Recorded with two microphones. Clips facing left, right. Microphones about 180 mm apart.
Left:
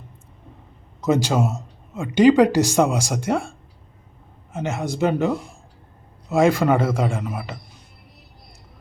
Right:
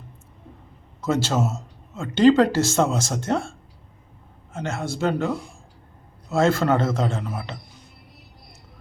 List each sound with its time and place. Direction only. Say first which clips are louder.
1.0 s speech: left 3 dB; 15° left (ahead or behind)
4.5 s speech: left 3 dB; 15° left (ahead or behind)